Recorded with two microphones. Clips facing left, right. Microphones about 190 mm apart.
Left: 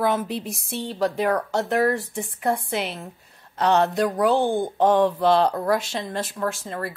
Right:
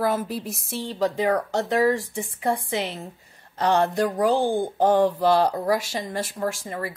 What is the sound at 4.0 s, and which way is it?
Speech, 65° left (ahead or behind).